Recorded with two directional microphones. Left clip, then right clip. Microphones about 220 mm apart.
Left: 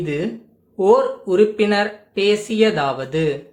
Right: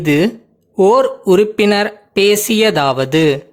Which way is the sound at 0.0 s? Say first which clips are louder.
Right 10 dB; 50° right (ahead or behind).